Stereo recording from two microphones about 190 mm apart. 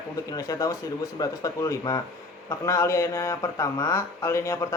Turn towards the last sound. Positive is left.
turn(degrees=15)  # may be behind; listen again after turning